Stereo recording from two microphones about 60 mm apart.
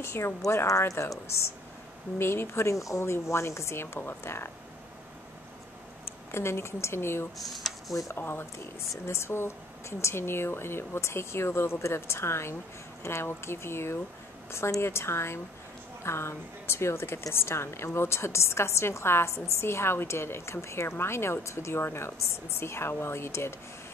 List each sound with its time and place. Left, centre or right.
0.0 s a woman's voice: left
0.7 s speech: left
1.2 s a woman's voice: left
2.7 s speech: left
3.0 s a woman's voice: left
6.3 s a woman's voice: left
7.3 s speech: centre
8.2 s a woman's voice: left